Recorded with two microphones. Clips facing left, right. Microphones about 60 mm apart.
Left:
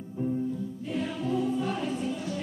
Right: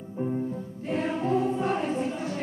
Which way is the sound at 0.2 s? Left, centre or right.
Right.